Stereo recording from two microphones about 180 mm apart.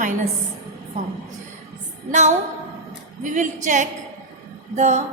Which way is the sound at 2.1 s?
40° right (ahead or behind).